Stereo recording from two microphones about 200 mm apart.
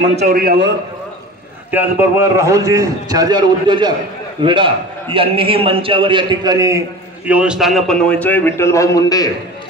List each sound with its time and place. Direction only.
0.1 s a man's voice: 40° right (ahead or behind)
1.7 s a man's voice: 10° right (ahead or behind)
7.2 s a man's voice: 5° right (ahead or behind); by 9.3 s 15° left (ahead or behind)